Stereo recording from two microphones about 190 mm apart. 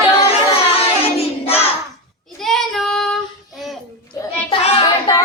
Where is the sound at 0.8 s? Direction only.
30° left (ahead or behind).